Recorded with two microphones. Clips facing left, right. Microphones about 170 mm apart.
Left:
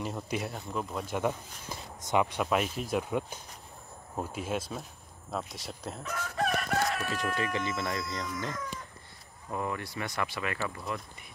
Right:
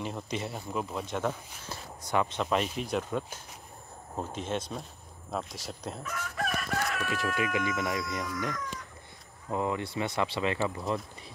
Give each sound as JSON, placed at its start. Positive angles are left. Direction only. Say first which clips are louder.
{"t": 0.0, "sound": "speech", "louder": "left 1 dB", "side_deg": 5}
{"t": 1.1, "sound": "speech", "louder": "left 2 dB", "side_deg": 10}
{"t": 2.4, "sound": "speech", "louder": "even", "side_deg": 5}
{"t": 6.0, "sound": "chicken", "louder": "left 4 dB", "side_deg": 35}
{"t": 7.3, "sound": "speech", "louder": "right 2 dB", "side_deg": -10}
{"t": 9.5, "sound": "speech", "louder": "right 4 dB", "side_deg": -20}